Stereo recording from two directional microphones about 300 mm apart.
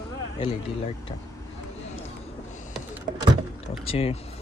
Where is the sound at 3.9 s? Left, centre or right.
Centre.